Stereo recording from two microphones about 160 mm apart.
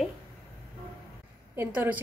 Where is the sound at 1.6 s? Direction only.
10° right (ahead or behind).